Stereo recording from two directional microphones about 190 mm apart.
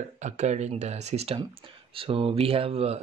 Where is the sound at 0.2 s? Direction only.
35° right (ahead or behind).